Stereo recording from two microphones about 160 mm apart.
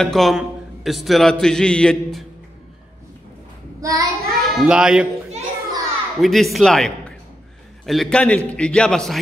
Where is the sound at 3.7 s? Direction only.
20° right (ahead or behind).